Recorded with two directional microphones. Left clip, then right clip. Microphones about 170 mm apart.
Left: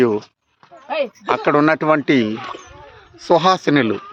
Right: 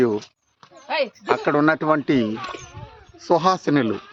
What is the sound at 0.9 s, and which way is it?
Speech, 15° right (ahead or behind).